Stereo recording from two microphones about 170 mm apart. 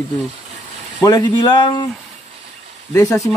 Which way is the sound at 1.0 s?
25° left (ahead or behind).